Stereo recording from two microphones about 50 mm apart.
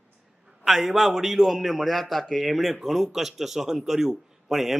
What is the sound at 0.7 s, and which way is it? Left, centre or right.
A man's voice, centre.